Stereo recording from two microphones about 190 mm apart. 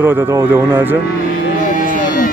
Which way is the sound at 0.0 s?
10° right (ahead or behind).